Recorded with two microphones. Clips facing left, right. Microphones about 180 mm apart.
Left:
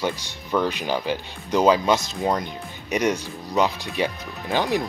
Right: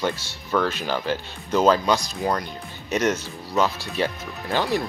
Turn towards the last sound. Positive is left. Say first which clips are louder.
# left 1 dB
turn(degrees=15)  # may be behind; listen again after turning